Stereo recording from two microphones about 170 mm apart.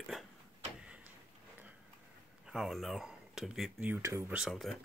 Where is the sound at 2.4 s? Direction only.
Centre (ahead or behind).